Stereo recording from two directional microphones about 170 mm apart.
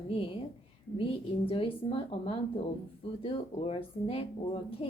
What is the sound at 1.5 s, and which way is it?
Speech, 30° left (ahead or behind).